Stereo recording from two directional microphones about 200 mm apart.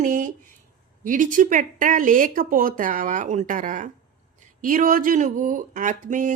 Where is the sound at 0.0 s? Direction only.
40° right (ahead or behind).